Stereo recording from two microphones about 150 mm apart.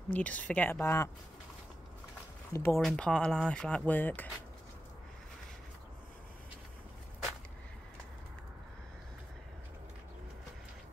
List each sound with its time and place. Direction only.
0.1 s speech: 10° left (ahead or behind)
2.5 s speech: 15° left (ahead or behind)
2.8 s speech: 5° left (ahead or behind)